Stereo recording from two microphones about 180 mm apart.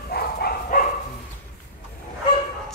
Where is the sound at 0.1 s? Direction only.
55° left (ahead or behind).